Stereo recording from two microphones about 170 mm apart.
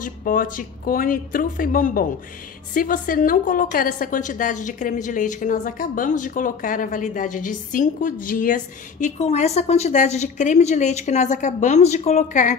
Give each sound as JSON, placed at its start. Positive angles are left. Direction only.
{"t": 0.0, "sound": "a woman's voice", "side_deg": 55}